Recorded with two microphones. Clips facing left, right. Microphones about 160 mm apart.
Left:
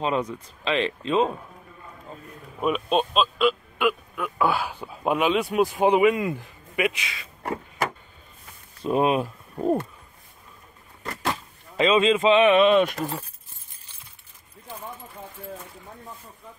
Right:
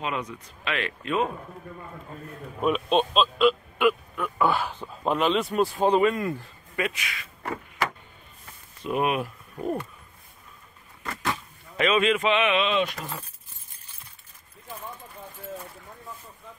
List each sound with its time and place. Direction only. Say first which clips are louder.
0.0 s speech: left 6 dB; 30° left (ahead or behind)
2.6 s speech: even; centre (ahead or behind); by 7.5 s 25° left (ahead or behind)
8.8 s speech: left 4 dB; 30° left (ahead or behind)
11.8 s speech: left 3 dB; 25° left (ahead or behind)
12.6 s speech: left 7 dB; 50° left (ahead or behind)